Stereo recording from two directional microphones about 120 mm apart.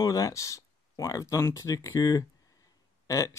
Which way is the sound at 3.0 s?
25° left (ahead or behind).